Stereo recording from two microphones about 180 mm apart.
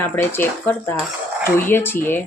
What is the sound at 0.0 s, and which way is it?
Speech, 10° left (ahead or behind).